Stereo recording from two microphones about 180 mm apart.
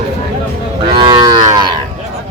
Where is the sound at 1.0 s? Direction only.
25° right (ahead or behind).